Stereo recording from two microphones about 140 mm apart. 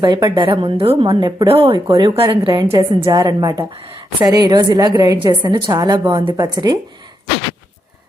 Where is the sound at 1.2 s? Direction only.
30° right (ahead or behind).